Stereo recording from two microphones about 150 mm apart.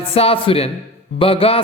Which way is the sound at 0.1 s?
40° left (ahead or behind).